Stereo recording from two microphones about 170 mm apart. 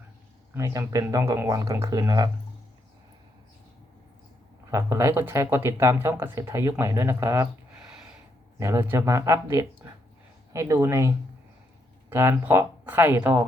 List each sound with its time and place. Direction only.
0.5 s speech: 20° right (ahead or behind)
4.7 s speech: 15° right (ahead or behind)
8.5 s speech: 15° right (ahead or behind)
12.1 s speech: 15° right (ahead or behind)